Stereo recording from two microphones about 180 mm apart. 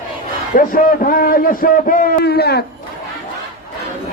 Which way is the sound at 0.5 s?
50° left (ahead or behind).